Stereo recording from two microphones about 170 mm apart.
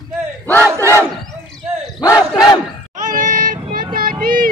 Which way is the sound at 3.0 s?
50° right (ahead or behind).